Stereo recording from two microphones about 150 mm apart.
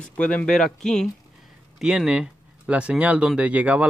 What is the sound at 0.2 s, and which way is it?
A man's voice, 10° left (ahead or behind).